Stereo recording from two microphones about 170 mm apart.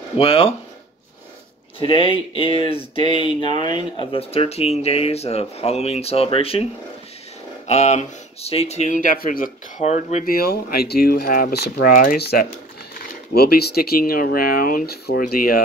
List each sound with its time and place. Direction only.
0.2 s speech: 35° left (ahead or behind)
1.8 s speech: 30° left (ahead or behind)
10.3 s speech: 65° left (ahead or behind)
12.2 s speech: 70° left (ahead or behind)